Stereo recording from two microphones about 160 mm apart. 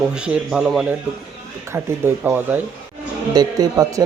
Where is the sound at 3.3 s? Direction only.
25° right (ahead or behind).